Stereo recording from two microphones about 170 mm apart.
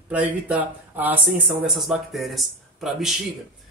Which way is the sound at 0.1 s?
10° right (ahead or behind).